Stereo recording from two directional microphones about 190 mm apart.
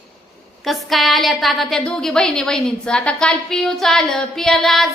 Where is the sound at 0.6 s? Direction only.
Centre (ahead or behind).